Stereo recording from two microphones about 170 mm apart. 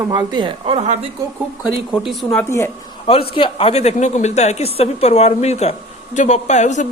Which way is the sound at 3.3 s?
30° left (ahead or behind).